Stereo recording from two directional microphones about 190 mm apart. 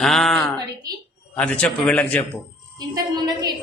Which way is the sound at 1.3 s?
5° left (ahead or behind).